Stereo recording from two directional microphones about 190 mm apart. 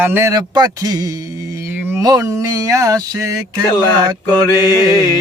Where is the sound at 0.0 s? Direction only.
10° right (ahead or behind).